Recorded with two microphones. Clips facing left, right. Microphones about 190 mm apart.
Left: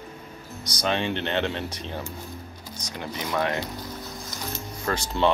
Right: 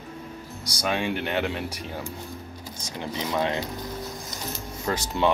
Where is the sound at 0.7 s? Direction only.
10° right (ahead or behind).